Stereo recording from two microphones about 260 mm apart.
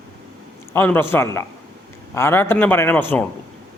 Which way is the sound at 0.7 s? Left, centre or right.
Centre.